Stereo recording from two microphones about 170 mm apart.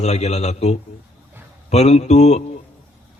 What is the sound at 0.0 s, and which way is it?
A man's voice, 40° left (ahead or behind).